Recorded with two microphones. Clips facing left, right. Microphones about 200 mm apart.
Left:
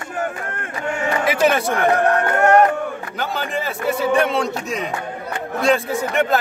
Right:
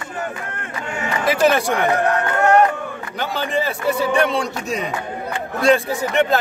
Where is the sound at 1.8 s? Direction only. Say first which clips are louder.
Left 2 dB; 50° left (ahead or behind).